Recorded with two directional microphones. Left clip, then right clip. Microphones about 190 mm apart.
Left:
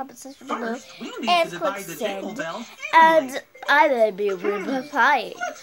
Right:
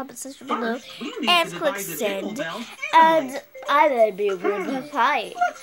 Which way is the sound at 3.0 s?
25° left (ahead or behind).